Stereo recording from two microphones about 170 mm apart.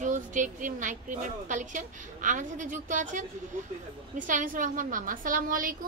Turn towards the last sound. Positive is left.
turn(degrees=-55)  # may be behind; listen again after turning